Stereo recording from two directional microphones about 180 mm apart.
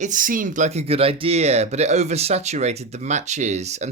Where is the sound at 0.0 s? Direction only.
45° right (ahead or behind).